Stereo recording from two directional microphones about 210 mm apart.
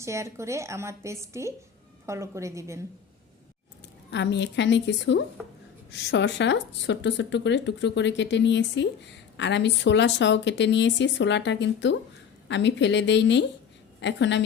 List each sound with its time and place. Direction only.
0.0 s a woman's voice: 15° right (ahead or behind)
4.1 s speech: 55° left (ahead or behind)